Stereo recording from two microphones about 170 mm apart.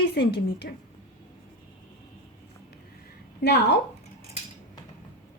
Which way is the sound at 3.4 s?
70° left (ahead or behind).